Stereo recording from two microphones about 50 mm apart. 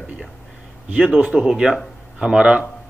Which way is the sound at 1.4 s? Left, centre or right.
Centre.